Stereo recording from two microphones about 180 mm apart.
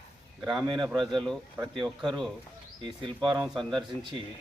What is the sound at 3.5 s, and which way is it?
Speech, 25° right (ahead or behind).